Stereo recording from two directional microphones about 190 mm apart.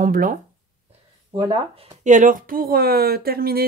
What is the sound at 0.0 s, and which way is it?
Speech, 45° right (ahead or behind).